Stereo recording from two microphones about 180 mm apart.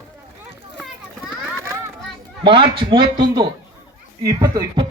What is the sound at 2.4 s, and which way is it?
A man's voice, 25° right (ahead or behind).